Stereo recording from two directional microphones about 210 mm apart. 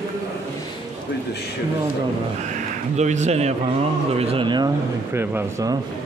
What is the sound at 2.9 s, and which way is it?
Speech, 35° right (ahead or behind).